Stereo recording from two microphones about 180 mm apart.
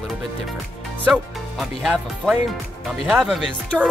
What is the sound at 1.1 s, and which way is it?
Speech, centre (ahead or behind).